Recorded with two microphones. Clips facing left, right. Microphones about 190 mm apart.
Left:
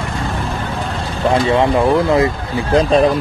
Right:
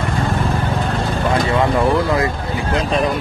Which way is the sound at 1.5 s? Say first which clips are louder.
Left 2 dB; 20° left (ahead or behind).